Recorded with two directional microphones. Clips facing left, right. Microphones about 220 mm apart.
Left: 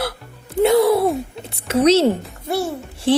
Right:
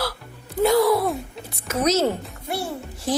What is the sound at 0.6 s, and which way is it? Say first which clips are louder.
Gasp: left 4 dB; 25° left (ahead or behind).